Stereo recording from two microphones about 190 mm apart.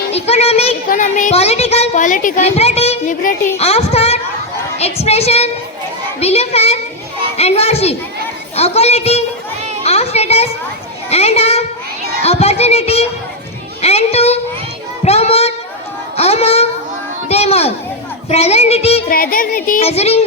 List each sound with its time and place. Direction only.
0.1 s a child's voice: 35° left (ahead or behind)
12.2 s music: 35° left (ahead or behind)
13.8 s a child's voice: 35° left (ahead or behind)
15.0 s child singing: 35° left (ahead or behind)
16.1 s a child's voice: 35° left (ahead or behind)
19.0 s speech: 50° left (ahead or behind)
19.8 s a child's voice: 35° left (ahead or behind)